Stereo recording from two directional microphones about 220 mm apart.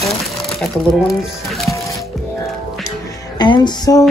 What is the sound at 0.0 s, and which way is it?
Music, centre (ahead or behind).